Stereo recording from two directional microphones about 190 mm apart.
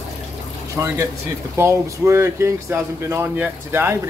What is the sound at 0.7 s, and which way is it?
Speech, 15° right (ahead or behind).